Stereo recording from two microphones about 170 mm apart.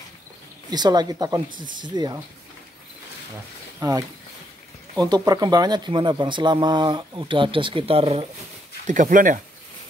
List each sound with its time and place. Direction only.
0.7 s speech: 25° right (ahead or behind)
3.8 s speech: 25° right (ahead or behind)
8.8 s speech: 50° right (ahead or behind)